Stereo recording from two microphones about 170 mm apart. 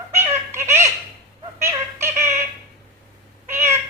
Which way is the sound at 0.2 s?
15° right (ahead or behind).